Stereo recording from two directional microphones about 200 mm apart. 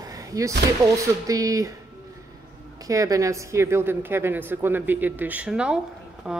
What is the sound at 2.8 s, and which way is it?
Speech, 15° right (ahead or behind).